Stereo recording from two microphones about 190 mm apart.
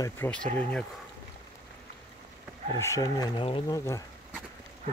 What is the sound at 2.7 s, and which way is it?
Speech, 15° left (ahead or behind).